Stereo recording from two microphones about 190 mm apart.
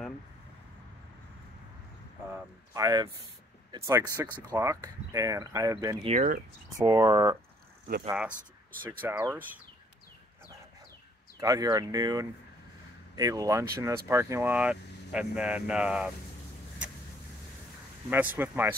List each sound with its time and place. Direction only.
2.7 s speech: 20° right (ahead or behind)
6.0 s speech: 40° right (ahead or behind)
6.8 s speech: 20° right (ahead or behind)
9.0 s speech: 10° right (ahead or behind)
11.3 s speech: 20° right (ahead or behind)
18.1 s speech: 10° right (ahead or behind)